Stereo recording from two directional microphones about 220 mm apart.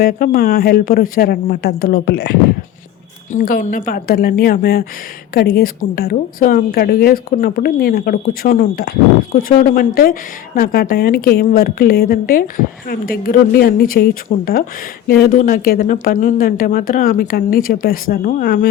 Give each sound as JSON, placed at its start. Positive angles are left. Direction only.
{"t": 0.0, "sound": "a woman's voice", "side_deg": 40}
{"t": 3.3, "sound": "a woman's voice", "side_deg": 35}